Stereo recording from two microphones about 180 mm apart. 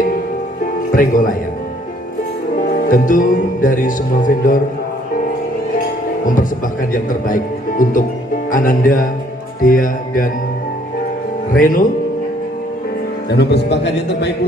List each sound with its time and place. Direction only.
0.9 s speech: 50° left (ahead or behind)
2.9 s speech: 50° left (ahead or behind)
6.2 s speech: 50° left (ahead or behind)
11.5 s speech: 50° left (ahead or behind)
13.3 s a man's voice: 70° left (ahead or behind)